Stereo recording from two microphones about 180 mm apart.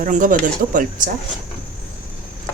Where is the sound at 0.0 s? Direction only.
50° right (ahead or behind).